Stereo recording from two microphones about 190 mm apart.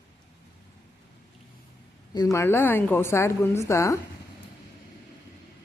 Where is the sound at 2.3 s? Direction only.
10° left (ahead or behind).